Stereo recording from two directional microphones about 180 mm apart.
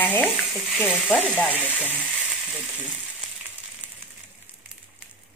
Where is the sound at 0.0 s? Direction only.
10° left (ahead or behind).